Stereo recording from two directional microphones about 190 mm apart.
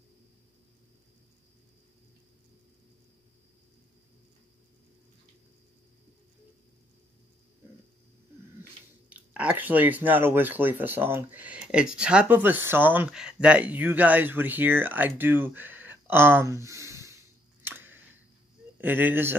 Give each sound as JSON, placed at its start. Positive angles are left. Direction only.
{"t": 9.1, "sound": "speech", "side_deg": -5}
{"t": 17.6, "sound": "camera", "side_deg": -10}
{"t": 18.8, "sound": "speech", "side_deg": -10}